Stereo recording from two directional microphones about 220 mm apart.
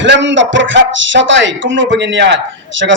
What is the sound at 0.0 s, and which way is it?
Speech, 55° right (ahead or behind).